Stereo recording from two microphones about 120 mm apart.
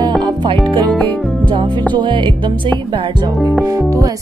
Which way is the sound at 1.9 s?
40° right (ahead or behind).